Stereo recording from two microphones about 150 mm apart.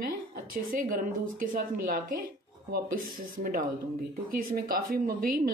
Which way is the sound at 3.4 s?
65° right (ahead or behind).